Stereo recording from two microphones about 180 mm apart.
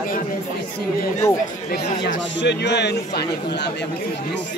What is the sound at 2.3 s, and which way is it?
Speech, 75° left (ahead or behind).